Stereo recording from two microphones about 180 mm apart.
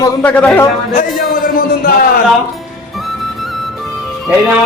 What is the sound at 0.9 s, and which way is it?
A man's voice, 50° left (ahead or behind).